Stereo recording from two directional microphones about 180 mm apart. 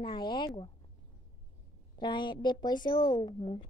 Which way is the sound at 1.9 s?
25° left (ahead or behind).